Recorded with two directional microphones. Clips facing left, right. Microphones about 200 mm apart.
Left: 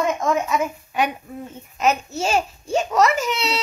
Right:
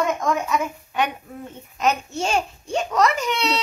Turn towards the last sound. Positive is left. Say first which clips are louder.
# even
turn(degrees=5)  # may be behind; listen again after turning